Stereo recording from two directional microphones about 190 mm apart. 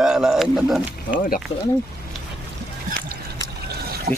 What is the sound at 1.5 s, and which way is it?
Speech, 30° left (ahead or behind).